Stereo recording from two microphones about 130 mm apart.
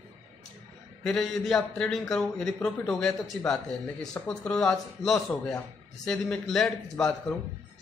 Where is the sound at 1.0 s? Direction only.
5° left (ahead or behind).